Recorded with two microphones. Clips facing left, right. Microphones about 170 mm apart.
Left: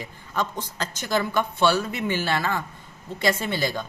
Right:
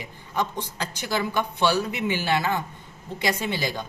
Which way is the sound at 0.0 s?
15° right (ahead or behind).